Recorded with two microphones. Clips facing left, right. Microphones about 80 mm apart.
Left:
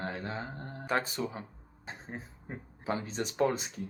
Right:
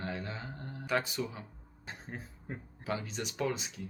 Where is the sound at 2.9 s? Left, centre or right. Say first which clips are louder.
Left 3 dB; left.